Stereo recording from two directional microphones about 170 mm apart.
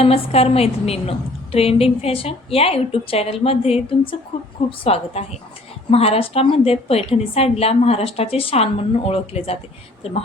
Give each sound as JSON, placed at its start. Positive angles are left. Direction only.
{"t": 0.0, "sound": "a woman's voice", "side_deg": 35}